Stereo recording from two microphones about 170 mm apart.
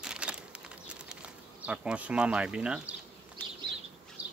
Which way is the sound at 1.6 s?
5° right (ahead or behind).